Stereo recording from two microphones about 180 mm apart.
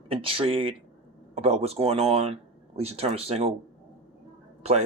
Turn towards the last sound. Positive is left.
turn(degrees=-35)  # may be behind; listen again after turning